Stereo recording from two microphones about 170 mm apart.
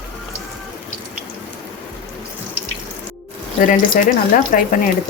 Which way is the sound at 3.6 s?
50° left (ahead or behind).